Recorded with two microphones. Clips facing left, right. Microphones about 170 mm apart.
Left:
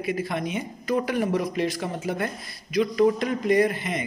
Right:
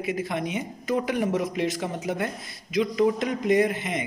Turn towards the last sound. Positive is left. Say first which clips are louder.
# left 1 dB
turn(degrees=-20)  # may be behind; listen again after turning